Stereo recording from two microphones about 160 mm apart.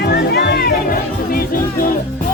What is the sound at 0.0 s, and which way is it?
Music, 85° left.